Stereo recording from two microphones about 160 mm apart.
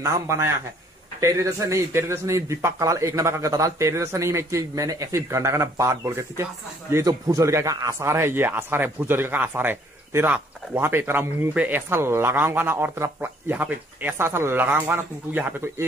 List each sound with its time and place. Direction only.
0.0 s a man's voice: 20° right (ahead or behind)